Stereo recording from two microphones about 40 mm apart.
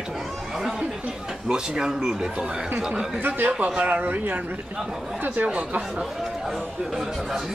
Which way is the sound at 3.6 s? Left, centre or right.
Right.